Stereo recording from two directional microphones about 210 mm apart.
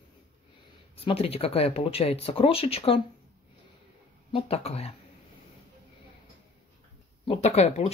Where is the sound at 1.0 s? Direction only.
25° left (ahead or behind).